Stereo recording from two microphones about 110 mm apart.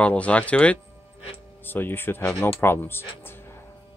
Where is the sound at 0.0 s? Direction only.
10° left (ahead or behind).